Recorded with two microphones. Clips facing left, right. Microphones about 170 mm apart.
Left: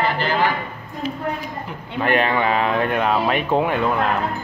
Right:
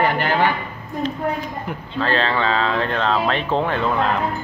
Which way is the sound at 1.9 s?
15° left (ahead or behind).